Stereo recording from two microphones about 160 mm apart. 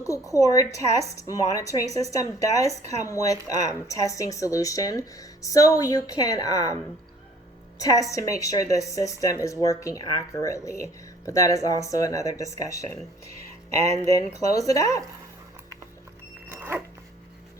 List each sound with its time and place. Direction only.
0.0 s a woman's voice: 20° left (ahead or behind)
7.8 s a woman's voice: 20° left (ahead or behind)
13.9 s a woman's voice: 20° left (ahead or behind)
16.5 s dog: 10° right (ahead or behind)